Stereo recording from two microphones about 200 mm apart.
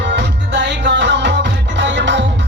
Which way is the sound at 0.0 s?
60° right (ahead or behind).